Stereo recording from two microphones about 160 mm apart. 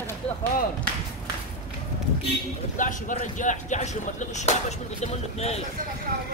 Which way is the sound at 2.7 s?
55° left (ahead or behind).